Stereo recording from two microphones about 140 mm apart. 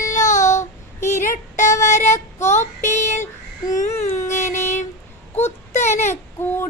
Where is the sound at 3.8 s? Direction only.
60° left (ahead or behind).